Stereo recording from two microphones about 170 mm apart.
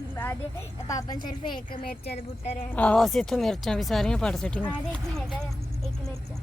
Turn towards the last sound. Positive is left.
turn(degrees=5)  # may be behind; listen again after turning